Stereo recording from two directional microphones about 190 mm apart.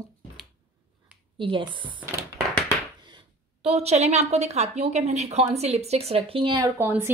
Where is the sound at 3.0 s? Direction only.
30° right (ahead or behind).